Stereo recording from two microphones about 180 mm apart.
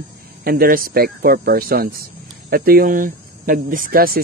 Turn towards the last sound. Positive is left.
turn(degrees=-55)  # may be behind; listen again after turning